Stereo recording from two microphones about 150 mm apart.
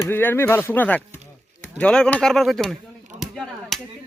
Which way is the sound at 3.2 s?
Centre (ahead or behind).